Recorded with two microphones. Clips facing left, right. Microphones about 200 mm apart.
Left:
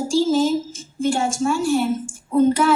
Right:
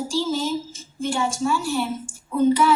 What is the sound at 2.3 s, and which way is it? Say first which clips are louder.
Child singing: left 2 dB; 50° left (ahead or behind).